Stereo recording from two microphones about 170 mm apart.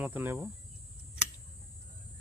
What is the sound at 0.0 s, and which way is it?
Speech, 10° right (ahead or behind).